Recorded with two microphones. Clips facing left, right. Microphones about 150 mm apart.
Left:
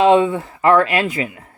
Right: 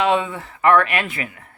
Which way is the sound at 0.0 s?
25° left (ahead or behind).